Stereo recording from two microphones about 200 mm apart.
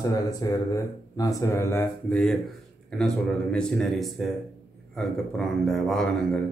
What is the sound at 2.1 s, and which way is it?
A man's voice, centre (ahead or behind).